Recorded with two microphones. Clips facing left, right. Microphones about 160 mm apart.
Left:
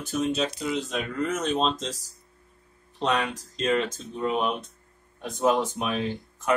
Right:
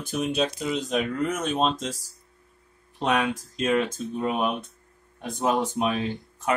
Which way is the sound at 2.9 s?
10° right (ahead or behind).